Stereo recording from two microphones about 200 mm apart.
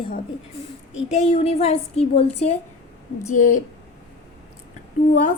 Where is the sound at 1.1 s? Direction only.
35° left (ahead or behind).